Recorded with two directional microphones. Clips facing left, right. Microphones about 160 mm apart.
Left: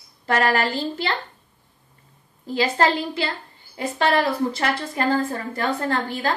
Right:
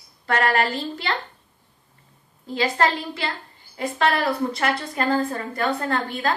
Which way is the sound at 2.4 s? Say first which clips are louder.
Left 1 dB; 30° left (ahead or behind).